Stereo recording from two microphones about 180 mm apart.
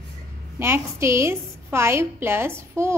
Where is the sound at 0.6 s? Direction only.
15° right (ahead or behind).